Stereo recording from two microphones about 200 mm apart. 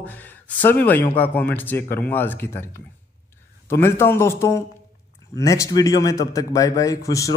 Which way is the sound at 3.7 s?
10° left (ahead or behind).